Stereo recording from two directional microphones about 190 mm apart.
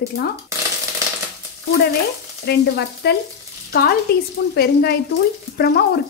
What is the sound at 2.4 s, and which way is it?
Frying, 60° left (ahead or behind).